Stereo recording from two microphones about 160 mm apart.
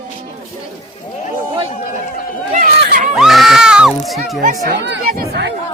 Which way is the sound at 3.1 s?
Centre (ahead or behind).